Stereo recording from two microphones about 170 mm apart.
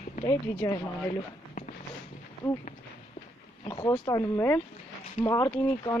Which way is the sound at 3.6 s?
25° left (ahead or behind).